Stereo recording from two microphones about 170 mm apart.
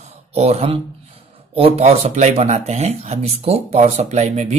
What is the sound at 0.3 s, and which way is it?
Speech, 40° right (ahead or behind).